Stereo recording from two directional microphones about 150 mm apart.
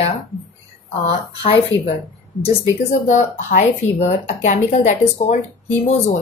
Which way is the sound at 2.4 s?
50° left (ahead or behind).